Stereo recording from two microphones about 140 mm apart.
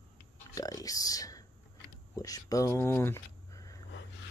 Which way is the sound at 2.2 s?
25° left (ahead or behind).